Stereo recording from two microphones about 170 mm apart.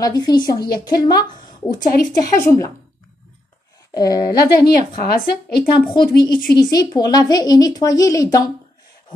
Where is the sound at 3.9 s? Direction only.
20° left (ahead or behind).